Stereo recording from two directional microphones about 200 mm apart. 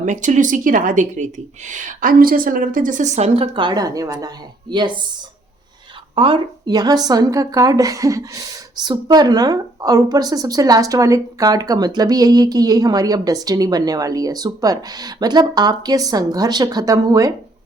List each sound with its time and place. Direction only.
0.0 s a woman's voice: 40° right (ahead or behind); by 5.0 s 25° right (ahead or behind)
6.1 s a woman's voice: 25° right (ahead or behind)